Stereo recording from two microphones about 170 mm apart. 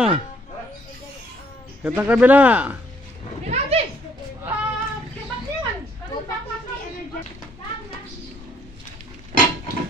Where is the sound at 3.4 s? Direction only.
35° right (ahead or behind).